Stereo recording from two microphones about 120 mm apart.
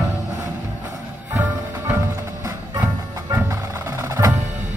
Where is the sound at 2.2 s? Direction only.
30° right (ahead or behind).